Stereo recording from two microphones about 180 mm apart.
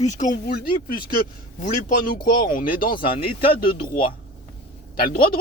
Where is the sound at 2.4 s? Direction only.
50° left (ahead or behind).